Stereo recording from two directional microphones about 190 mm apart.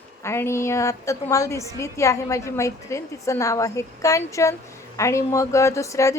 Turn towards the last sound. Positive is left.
turn(degrees=15)  # may be behind; listen again after turning